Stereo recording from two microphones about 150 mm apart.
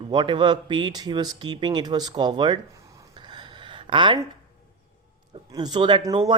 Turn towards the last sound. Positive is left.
turn(degrees=-30)  # may be behind; listen again after turning